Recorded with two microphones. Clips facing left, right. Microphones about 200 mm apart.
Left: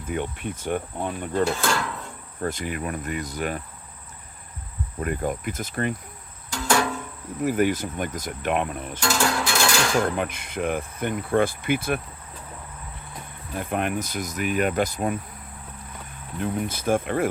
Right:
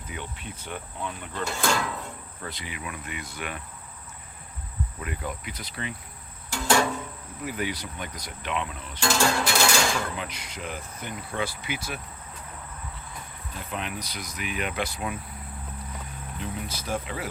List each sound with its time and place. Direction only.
0.1 s speech: 55° left (ahead or behind)
1.6 s music: centre (ahead or behind)
2.4 s speech: 45° left (ahead or behind)
4.9 s speech: 45° left (ahead or behind)
6.5 s music: 5° right (ahead or behind)
7.4 s speech: 45° left (ahead or behind)
9.0 s music: 5° right (ahead or behind)
10.0 s speech: 55° left (ahead or behind)
13.6 s speech: 55° left (ahead or behind)
16.4 s speech: 55° left (ahead or behind)